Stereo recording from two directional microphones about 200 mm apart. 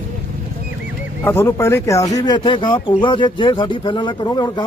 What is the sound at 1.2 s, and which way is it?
Speech, 15° left (ahead or behind).